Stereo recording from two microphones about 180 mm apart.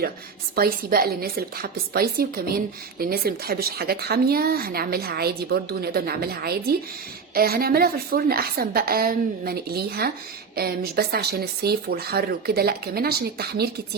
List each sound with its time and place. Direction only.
0.5 s a woman's voice: 55° right (ahead or behind)